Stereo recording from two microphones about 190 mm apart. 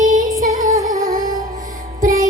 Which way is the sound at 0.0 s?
45° right (ahead or behind).